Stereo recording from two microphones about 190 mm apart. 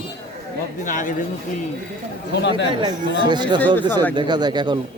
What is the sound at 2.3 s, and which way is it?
Speech, 65° left (ahead or behind).